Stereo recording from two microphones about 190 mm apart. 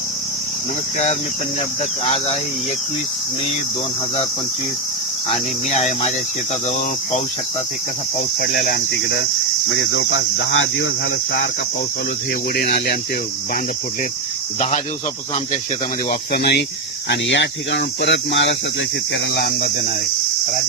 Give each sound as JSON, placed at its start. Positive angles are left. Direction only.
{"t": 2.0, "sound": "speech", "side_deg": 30}
{"t": 5.3, "sound": "speech", "side_deg": 35}
{"t": 8.4, "sound": "cricket", "side_deg": 60}
{"t": 9.7, "sound": "cricket", "side_deg": 75}
{"t": 12.6, "sound": "speech", "side_deg": 50}
{"t": 16.0, "sound": "cricket", "side_deg": 55}
{"t": 17.1, "sound": "speech", "side_deg": 70}
{"t": 19.1, "sound": "speech", "side_deg": 55}